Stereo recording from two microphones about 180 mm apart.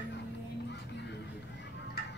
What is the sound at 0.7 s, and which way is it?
Music, 75° left (ahead or behind).